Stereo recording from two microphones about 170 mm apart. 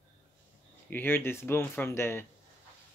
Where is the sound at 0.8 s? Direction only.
10° left (ahead or behind).